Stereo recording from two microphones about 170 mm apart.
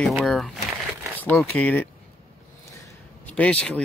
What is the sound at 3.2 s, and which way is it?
Speech, 10° left (ahead or behind).